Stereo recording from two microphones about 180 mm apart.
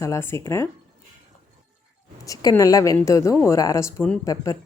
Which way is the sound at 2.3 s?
20° left (ahead or behind).